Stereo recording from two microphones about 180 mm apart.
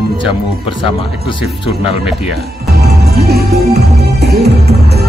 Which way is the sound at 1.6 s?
35° left (ahead or behind).